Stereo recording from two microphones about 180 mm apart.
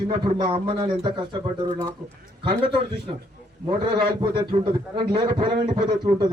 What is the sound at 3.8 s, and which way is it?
A man's voice, 25° right (ahead or behind).